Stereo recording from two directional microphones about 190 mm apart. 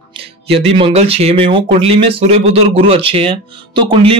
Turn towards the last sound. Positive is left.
turn(degrees=-30)  # may be behind; listen again after turning